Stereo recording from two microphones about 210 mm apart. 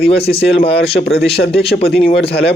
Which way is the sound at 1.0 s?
50° left (ahead or behind).